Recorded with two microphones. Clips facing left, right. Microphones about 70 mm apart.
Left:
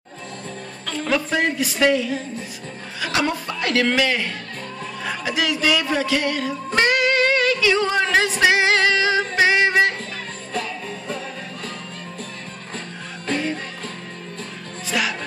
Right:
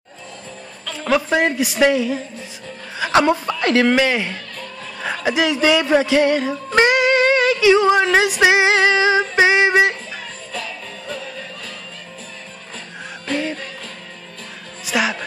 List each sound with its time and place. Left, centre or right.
1.0 s a woman's voice: right
3.0 s a woman's voice: right
5.0 s music: right
10.5 s music: left
14.9 s music: right